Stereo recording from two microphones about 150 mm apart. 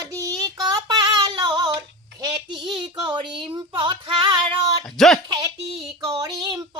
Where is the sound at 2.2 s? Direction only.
30° right (ahead or behind).